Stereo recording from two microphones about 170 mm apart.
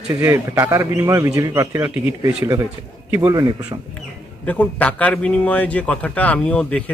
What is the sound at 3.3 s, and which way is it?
Speech, 20° right (ahead or behind).